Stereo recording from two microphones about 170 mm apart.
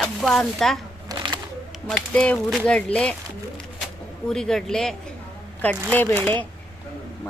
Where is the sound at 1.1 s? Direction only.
25° right (ahead or behind).